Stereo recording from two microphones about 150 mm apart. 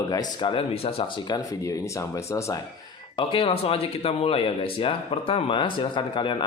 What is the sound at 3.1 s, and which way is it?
Speech, 35° left (ahead or behind).